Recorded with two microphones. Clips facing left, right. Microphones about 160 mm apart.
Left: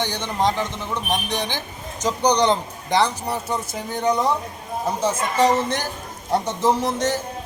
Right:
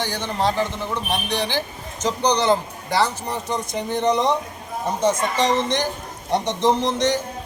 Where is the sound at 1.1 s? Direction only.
15° left (ahead or behind).